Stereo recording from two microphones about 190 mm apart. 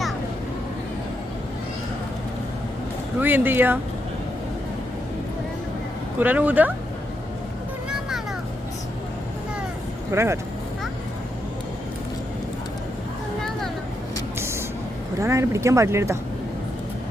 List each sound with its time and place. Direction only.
3.2 s speech: 10° right (ahead or behind)
6.1 s speech: 10° right (ahead or behind)
10.1 s speech: 15° right (ahead or behind)
14.3 s vehicle: 15° right (ahead or behind)
15.2 s speech: 15° right (ahead or behind)